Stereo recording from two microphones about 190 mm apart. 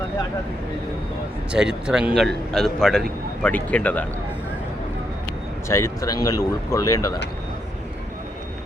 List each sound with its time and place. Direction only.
1.5 s a man's voice: 5° right (ahead or behind)
5.6 s speech: 15° left (ahead or behind)